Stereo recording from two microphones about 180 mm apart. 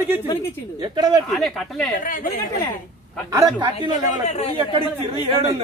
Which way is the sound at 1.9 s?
50° left (ahead or behind).